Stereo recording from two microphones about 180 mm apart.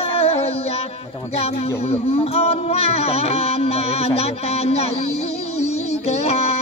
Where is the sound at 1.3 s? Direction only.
35° left (ahead or behind).